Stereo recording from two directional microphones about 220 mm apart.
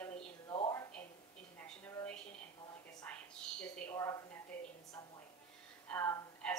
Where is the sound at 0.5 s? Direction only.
15° left (ahead or behind).